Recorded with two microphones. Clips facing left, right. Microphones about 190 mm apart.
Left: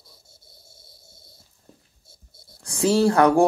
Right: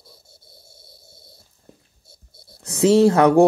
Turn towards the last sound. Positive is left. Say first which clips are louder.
# right 4 dB
turn(degrees=-20)  # may be behind; listen again after turning